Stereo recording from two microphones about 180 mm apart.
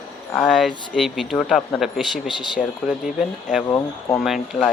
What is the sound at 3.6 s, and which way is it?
Speech, 15° left (ahead or behind).